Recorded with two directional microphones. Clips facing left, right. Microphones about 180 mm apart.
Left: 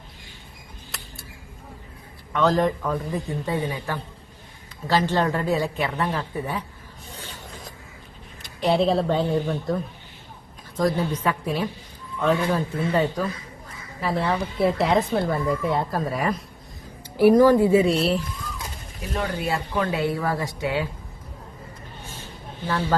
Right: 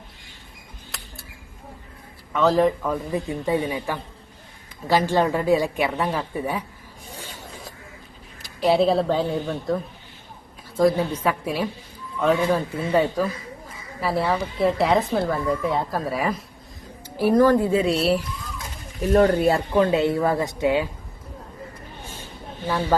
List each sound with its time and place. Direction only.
0.9 s a sound: centre (ahead or behind)
2.3 s a woman's voice: centre (ahead or behind)
7.2 s zipper: 10° right (ahead or behind)
8.4 s a woman's voice: centre (ahead or behind)
17.2 s speech: 15° left (ahead or behind); by 18.2 s 5° right (ahead or behind)
19.2 s speech: 40° right (ahead or behind)
19.7 s a woman's voice: 20° right (ahead or behind)
22.6 s a woman's voice: 15° right (ahead or behind)